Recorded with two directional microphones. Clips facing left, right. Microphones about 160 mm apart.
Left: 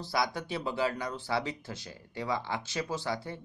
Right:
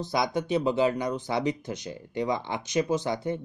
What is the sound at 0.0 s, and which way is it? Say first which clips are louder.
Speech: right 5 dB; 20° right (ahead or behind).